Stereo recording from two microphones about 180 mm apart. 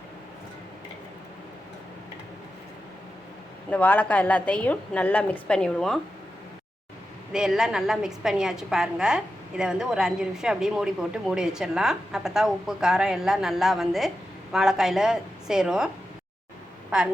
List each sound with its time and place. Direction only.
3.7 s a woman's voice: 10° left (ahead or behind)
7.3 s a woman's voice: 5° right (ahead or behind)